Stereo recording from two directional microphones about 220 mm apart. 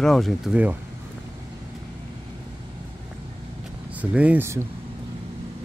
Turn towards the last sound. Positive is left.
turn(degrees=-10)  # may be behind; listen again after turning